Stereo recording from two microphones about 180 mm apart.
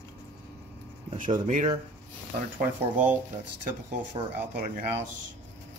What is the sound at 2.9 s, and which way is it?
Speech, 10° right (ahead or behind).